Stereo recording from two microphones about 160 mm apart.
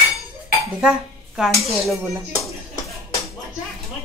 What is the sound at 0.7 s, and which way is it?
Speech, 5° right (ahead or behind).